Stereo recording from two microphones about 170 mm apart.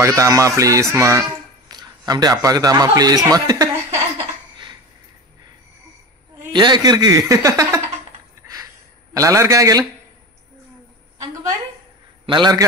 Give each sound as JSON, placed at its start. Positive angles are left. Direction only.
{"t": 0.0, "sound": "a man's voice", "side_deg": -15}
{"t": 6.5, "sound": "speech", "side_deg": -25}
{"t": 9.1, "sound": "speech", "side_deg": -20}
{"t": 12.3, "sound": "speech", "side_deg": -25}